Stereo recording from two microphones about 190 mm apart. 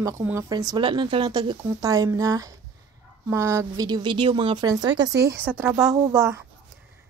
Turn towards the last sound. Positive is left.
turn(degrees=-15)  # may be behind; listen again after turning